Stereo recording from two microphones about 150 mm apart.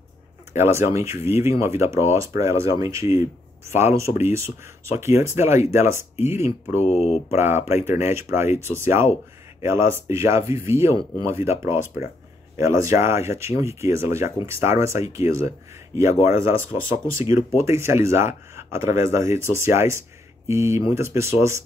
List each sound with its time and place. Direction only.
0.5 s speech: 15° right (ahead or behind)
6.8 s speech: 50° left (ahead or behind)
7.2 s speech: 15° right (ahead or behind)